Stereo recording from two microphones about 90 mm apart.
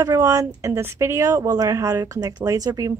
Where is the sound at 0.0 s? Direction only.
35° right (ahead or behind).